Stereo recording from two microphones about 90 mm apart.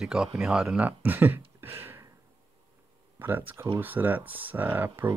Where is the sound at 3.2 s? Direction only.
20° right (ahead or behind).